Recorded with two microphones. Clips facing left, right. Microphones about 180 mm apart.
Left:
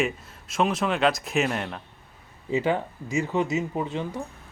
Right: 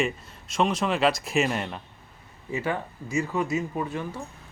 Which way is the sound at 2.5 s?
20° left (ahead or behind).